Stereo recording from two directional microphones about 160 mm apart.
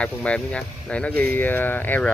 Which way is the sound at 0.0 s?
5° left (ahead or behind).